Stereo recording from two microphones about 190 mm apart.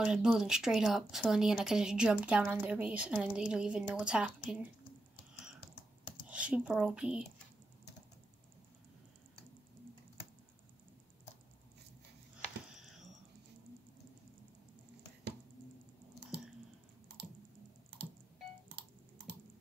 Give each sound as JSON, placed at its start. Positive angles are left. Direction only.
{"t": 0.0, "sound": "speech", "side_deg": -5}
{"t": 6.2, "sound": "speech", "side_deg": -5}
{"t": 18.7, "sound": "computer keyboard", "side_deg": -60}